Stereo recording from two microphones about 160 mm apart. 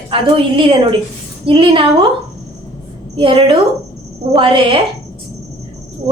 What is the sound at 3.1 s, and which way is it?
A woman's voice, 30° right (ahead or behind).